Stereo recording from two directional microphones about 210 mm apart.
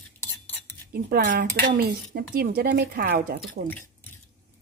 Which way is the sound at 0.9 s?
50° right (ahead or behind).